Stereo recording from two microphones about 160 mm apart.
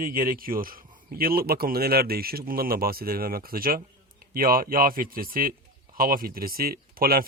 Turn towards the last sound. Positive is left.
turn(degrees=-65)  # may be behind; listen again after turning